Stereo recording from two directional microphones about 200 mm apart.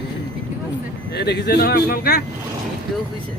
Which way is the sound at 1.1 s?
55° left (ahead or behind).